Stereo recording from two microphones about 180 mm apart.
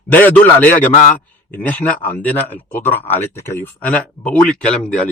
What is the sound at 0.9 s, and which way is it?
Speech, 45° left (ahead or behind).